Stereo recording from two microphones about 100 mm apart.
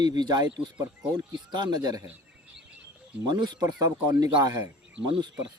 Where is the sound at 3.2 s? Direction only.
45° right (ahead or behind).